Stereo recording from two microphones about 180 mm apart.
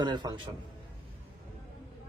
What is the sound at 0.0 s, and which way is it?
Speech, 25° right (ahead or behind).